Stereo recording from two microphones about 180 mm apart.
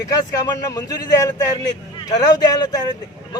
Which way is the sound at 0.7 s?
20° left (ahead or behind).